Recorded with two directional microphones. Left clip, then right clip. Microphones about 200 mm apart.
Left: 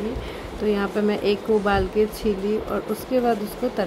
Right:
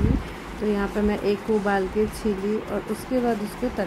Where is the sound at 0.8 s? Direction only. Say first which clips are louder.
Left 2 dB; 5° left (ahead or behind).